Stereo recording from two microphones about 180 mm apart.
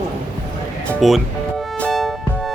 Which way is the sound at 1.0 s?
Centre (ahead or behind).